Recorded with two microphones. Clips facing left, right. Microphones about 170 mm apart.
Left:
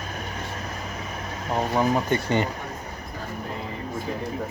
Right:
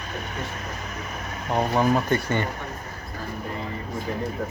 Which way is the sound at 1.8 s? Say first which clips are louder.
Even; 15° left (ahead or behind).